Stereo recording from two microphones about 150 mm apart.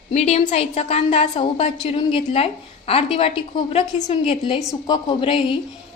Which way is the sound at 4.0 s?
50° left (ahead or behind).